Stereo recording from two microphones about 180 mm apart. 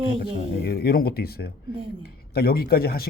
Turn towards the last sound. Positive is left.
turn(degrees=60)  # may be behind; listen again after turning